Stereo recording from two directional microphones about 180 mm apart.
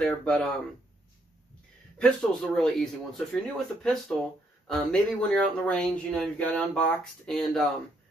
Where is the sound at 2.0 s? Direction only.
5° left (ahead or behind).